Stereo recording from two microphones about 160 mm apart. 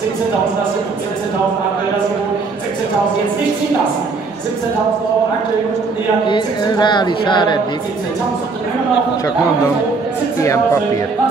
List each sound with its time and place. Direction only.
6.2 s a woman's voice: 30° left (ahead or behind)
10.4 s speech: 20° left (ahead or behind)